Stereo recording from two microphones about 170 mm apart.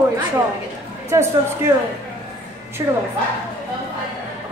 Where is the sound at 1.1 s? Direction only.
15° right (ahead or behind).